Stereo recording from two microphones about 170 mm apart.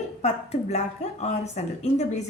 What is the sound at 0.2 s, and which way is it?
A woman's voice, 40° left (ahead or behind).